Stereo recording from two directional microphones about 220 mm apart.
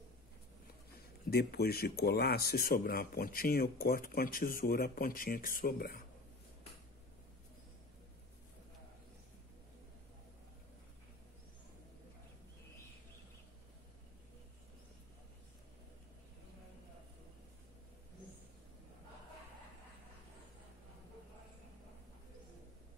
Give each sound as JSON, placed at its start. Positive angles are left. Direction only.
{"t": 1.3, "sound": "speech", "side_deg": 45}